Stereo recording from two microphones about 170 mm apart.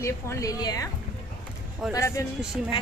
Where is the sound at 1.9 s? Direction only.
20° left (ahead or behind).